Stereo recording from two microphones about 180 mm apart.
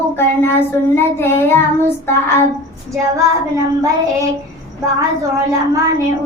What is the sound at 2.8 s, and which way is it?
Child singing, 15° right (ahead or behind).